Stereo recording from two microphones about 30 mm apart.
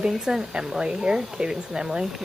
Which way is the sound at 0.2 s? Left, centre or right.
Centre.